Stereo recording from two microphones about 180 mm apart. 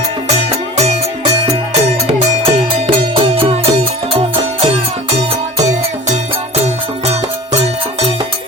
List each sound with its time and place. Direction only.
0.3 s music: 35° right (ahead or behind)
7.0 s music: 35° right (ahead or behind)